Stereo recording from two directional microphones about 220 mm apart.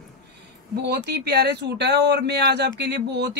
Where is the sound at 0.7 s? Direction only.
50° right (ahead or behind).